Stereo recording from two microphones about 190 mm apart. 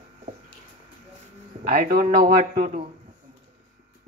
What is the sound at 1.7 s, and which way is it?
Speech, 50° right (ahead or behind).